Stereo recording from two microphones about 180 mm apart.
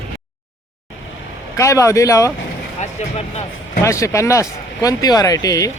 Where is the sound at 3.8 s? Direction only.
15° left (ahead or behind).